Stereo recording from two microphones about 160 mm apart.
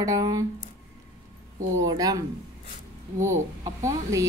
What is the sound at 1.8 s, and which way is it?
Speech, 25° right (ahead or behind).